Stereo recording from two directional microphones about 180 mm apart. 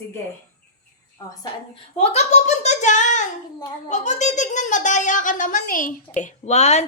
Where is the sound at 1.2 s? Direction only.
15° left (ahead or behind).